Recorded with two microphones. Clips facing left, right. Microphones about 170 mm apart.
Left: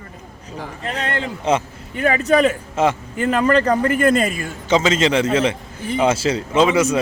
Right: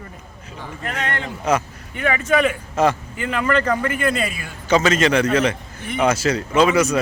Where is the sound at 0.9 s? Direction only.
30° left (ahead or behind).